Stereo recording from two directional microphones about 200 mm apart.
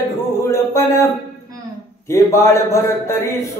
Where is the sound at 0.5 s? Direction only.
15° left (ahead or behind).